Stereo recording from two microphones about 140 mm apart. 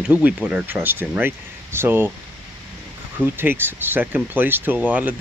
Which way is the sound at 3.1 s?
15° right (ahead or behind).